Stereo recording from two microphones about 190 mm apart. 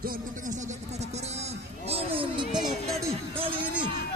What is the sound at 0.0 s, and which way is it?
Music, 45° right (ahead or behind).